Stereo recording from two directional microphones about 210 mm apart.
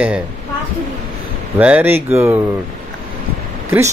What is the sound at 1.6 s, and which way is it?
Speech, 10° right (ahead or behind).